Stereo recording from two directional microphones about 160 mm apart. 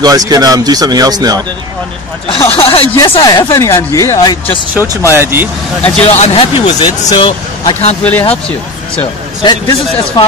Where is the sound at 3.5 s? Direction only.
20° left (ahead or behind).